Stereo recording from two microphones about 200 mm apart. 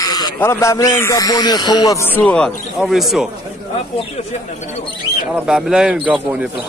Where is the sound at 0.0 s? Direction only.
20° left (ahead or behind); by 3.3 s centre (ahead or behind).